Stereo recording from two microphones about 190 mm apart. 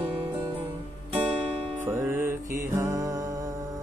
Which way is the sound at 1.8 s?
10° right (ahead or behind).